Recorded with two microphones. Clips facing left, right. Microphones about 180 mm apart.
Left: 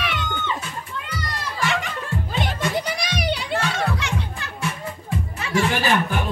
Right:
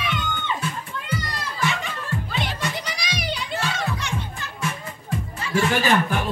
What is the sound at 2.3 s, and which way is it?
Children playing, 50° left (ahead or behind).